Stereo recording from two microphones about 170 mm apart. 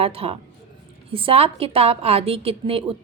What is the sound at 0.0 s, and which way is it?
A woman's voice, 35° right (ahead or behind).